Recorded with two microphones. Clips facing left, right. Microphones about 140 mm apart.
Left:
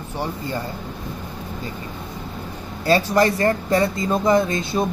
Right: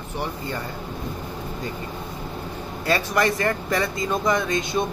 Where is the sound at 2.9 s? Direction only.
30° left (ahead or behind).